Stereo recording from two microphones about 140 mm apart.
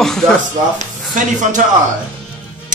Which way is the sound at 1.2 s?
65° right (ahead or behind).